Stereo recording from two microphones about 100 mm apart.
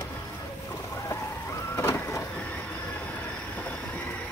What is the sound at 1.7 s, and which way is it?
Printer, 25° left (ahead or behind).